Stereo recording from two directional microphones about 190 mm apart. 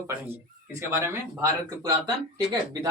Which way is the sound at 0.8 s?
15° right (ahead or behind).